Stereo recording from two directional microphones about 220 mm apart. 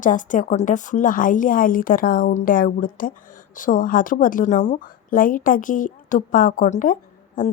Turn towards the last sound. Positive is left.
turn(degrees=35)  # may be behind; listen again after turning